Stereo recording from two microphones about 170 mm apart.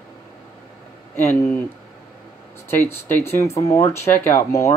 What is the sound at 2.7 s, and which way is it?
Speech, 15° left (ahead or behind).